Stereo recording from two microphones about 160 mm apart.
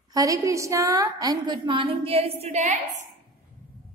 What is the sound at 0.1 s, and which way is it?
A woman's voice, 20° right (ahead or behind).